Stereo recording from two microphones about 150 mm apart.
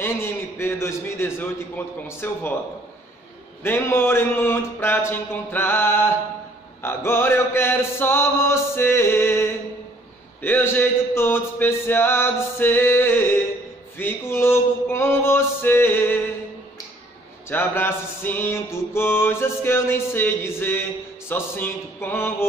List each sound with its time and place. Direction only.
0.0 s a man's voice: 15° left (ahead or behind)
3.6 s music: 15° left (ahead or behind)
17.5 s music: 15° left (ahead or behind)